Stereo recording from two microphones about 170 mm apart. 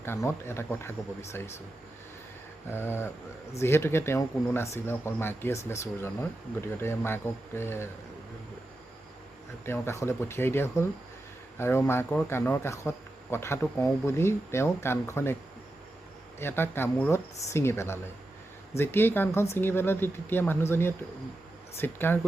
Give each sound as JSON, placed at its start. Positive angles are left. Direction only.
{"t": 0.0, "sound": "speech", "side_deg": 15}
{"t": 2.6, "sound": "speech", "side_deg": 15}
{"t": 9.6, "sound": "speech", "side_deg": 15}
{"t": 16.4, "sound": "speech", "side_deg": 15}